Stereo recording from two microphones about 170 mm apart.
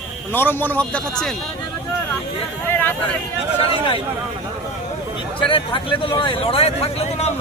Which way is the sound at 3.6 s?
30° left (ahead or behind).